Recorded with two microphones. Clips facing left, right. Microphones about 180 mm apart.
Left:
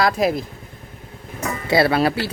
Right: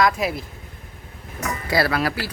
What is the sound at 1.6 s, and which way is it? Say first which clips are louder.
Speech: left 5 dB; 25° left (ahead or behind).